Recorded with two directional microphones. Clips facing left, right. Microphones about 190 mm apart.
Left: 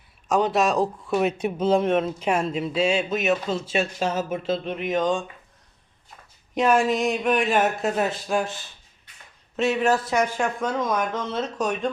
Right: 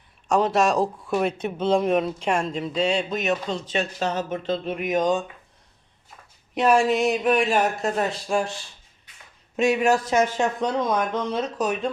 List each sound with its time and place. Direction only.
0.3 s speech: centre (ahead or behind)
4.7 s speech: 10° right (ahead or behind)
6.5 s speech: centre (ahead or behind)
9.6 s speech: 10° right (ahead or behind)
10.2 s speech: 25° right (ahead or behind); by 11.9 s 5° right (ahead or behind)